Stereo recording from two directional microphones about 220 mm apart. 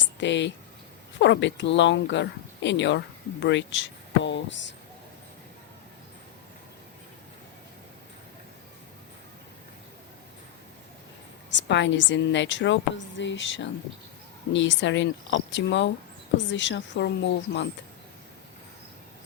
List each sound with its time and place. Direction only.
0.0 s a sound: 55° left (ahead or behind)
1.2 s a woman's voice: 55° left (ahead or behind)
11.5 s a woman's voice: 55° left (ahead or behind)